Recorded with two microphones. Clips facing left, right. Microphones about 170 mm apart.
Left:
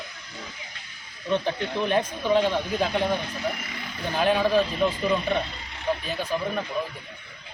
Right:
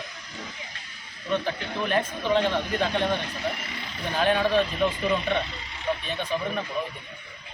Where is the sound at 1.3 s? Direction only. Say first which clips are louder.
Left 2 dB; 20° left (ahead or behind).